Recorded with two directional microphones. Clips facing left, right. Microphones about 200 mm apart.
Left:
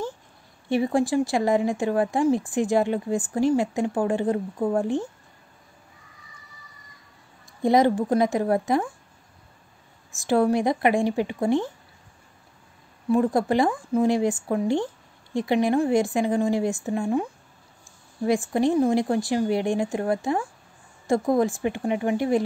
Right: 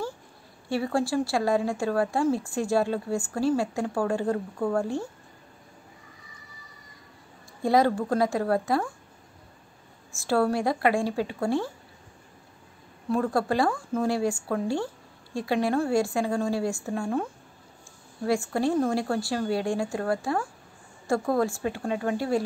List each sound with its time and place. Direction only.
0.7 s speech: 20° left (ahead or behind)
7.6 s speech: 20° left (ahead or behind)
10.1 s speech: 20° left (ahead or behind)
13.1 s speech: 20° left (ahead or behind)